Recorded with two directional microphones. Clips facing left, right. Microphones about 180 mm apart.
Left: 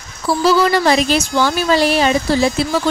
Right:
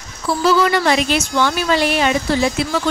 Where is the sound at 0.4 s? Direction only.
35° left (ahead or behind).